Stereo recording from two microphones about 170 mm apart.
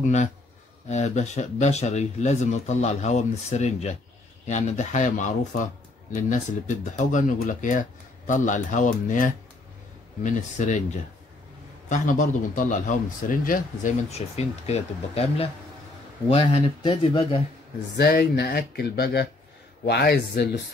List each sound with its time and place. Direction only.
0.0 s a man's voice: 45° left (ahead or behind)
11.9 s a man's voice: 50° left (ahead or behind)
14.1 s speech: 40° left (ahead or behind)
17.9 s speech: 65° left (ahead or behind)